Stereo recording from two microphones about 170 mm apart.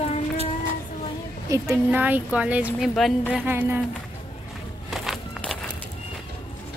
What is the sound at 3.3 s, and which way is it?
Speech, 10° right (ahead or behind).